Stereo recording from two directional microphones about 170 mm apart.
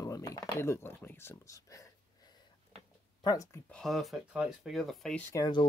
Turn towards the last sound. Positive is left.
turn(degrees=25)  # may be behind; listen again after turning